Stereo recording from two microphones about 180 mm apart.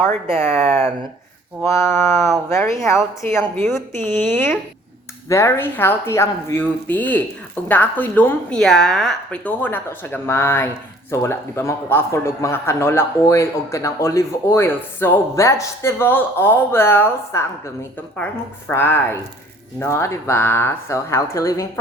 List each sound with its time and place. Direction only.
0.3 s a man's voice: 15° left (ahead or behind)
18.7 s a man's voice: 10° left (ahead or behind)